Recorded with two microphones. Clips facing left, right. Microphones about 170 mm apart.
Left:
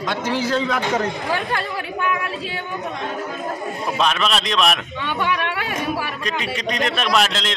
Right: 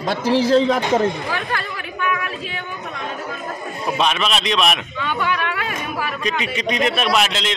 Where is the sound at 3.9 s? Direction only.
5° right (ahead or behind).